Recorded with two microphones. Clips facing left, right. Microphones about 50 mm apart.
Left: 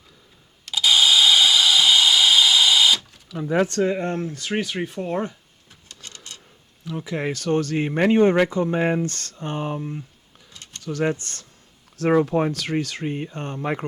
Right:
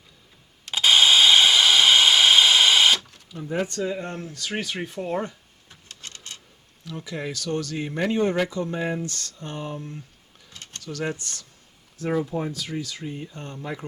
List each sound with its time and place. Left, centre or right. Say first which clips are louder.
0.7 s a sound: even; right
3.4 s speech: left 6 dB; left
3.8 s speech: left 6 dB; left
4.5 s speech: left 4 dB; centre
6.0 s a sound: even; right
7.0 s speech: left 5 dB; left
10.8 s speech: left 6 dB; left
11.9 s speech: left 7 dB; left